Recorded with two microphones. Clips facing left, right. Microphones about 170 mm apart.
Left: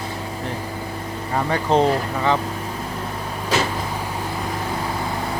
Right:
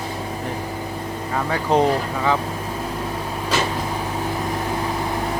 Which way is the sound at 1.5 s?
10° right (ahead or behind).